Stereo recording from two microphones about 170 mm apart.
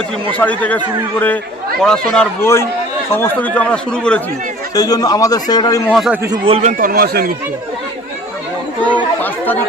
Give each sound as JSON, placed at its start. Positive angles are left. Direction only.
{"t": 0.3, "sound": "speech", "side_deg": 10}
{"t": 1.8, "sound": "speech", "side_deg": 5}
{"t": 2.4, "sound": "speech", "side_deg": 15}
{"t": 4.7, "sound": "a man's voice", "side_deg": 20}
{"t": 5.9, "sound": "speech", "side_deg": 0}
{"t": 6.3, "sound": "speech", "side_deg": -30}
{"t": 6.6, "sound": "a man's voice", "side_deg": -50}
{"t": 8.8, "sound": "chatter", "side_deg": 10}